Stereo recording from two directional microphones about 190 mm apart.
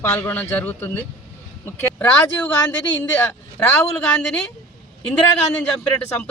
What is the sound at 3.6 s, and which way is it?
Speech, 5° left (ahead or behind).